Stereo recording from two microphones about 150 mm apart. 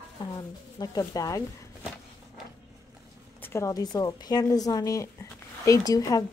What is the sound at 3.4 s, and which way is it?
A woman's voice, 15° left (ahead or behind).